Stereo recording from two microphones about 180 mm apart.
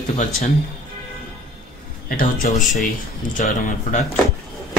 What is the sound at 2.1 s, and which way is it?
Speech, 45° left (ahead or behind).